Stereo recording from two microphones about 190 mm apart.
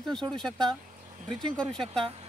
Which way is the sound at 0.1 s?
Centre (ahead or behind).